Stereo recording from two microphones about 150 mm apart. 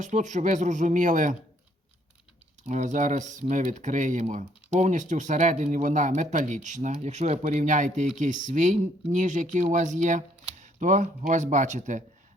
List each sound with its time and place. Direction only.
0.0 s speech: 55° right (ahead or behind)
2.6 s speech: 55° right (ahead or behind)